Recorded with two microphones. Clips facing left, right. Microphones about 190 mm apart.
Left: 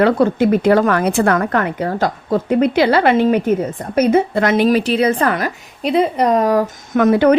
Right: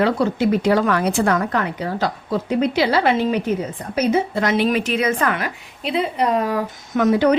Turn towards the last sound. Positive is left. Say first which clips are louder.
# left 4 dB
turn(degrees=55)  # may be behind; listen again after turning